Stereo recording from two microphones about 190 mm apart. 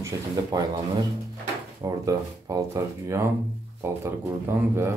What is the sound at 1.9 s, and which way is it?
Speech, 15° right (ahead or behind).